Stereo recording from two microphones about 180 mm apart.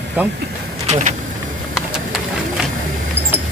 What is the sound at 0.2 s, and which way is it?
Speech, 10° right (ahead or behind).